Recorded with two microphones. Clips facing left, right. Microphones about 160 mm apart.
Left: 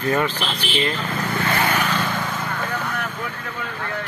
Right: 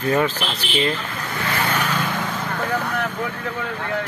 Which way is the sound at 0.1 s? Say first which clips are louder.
Right 2 dB; 15° right (ahead or behind).